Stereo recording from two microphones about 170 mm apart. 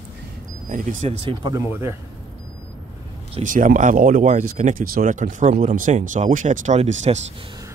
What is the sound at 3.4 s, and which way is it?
Speech, 50° right (ahead or behind).